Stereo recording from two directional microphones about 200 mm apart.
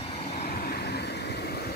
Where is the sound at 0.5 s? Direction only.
45° left (ahead or behind).